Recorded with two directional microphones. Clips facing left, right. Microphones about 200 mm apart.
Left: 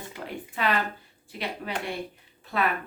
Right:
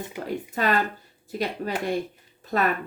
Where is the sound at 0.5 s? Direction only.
40° right (ahead or behind).